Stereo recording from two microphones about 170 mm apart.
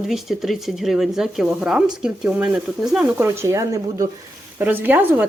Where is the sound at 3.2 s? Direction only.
15° right (ahead or behind).